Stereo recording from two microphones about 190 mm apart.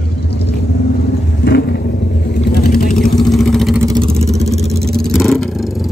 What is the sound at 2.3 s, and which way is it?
Sewing machine, 55° left (ahead or behind).